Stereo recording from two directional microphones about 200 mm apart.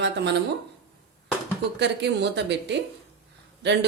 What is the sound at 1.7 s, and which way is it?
Speech, 60° right (ahead or behind).